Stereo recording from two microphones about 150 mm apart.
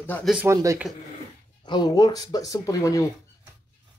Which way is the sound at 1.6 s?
30° left (ahead or behind).